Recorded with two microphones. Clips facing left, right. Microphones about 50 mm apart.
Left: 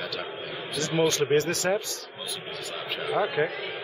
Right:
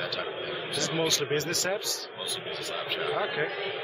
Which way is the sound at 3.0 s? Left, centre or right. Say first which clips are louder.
Left 5 dB; centre.